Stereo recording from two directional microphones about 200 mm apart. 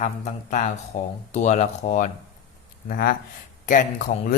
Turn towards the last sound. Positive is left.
turn(degrees=40)  # may be behind; listen again after turning